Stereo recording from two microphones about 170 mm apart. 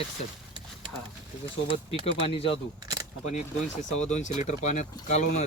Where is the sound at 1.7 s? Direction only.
35° left (ahead or behind).